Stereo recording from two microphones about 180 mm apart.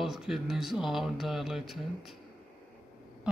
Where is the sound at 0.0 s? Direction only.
Centre (ahead or behind).